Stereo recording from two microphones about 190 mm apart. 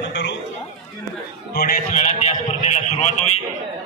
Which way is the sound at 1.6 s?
45° left (ahead or behind).